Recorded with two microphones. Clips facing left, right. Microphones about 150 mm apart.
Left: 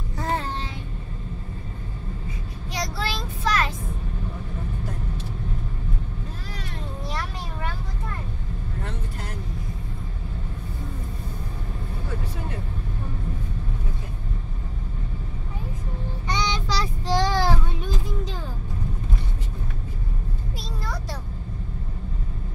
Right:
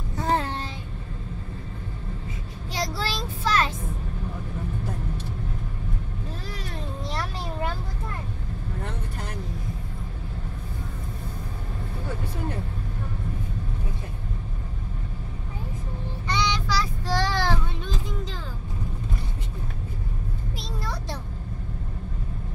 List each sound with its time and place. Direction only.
2.7 s child singing: 30° right (ahead or behind)
16.3 s child singing: 20° left (ahead or behind)